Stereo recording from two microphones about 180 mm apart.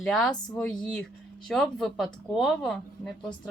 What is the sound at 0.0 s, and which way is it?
Speech, centre (ahead or behind).